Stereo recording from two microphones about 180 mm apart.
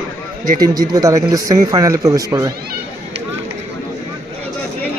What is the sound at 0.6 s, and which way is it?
A man's voice, 20° right (ahead or behind).